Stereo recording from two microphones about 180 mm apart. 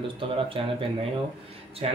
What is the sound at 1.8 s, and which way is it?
Speech, 35° right (ahead or behind).